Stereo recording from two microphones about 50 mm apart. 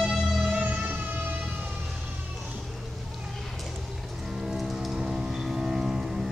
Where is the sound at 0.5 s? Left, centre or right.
Right.